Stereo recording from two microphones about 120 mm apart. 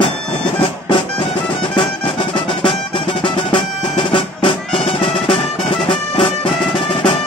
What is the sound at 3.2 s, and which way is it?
Music, 45° left (ahead or behind).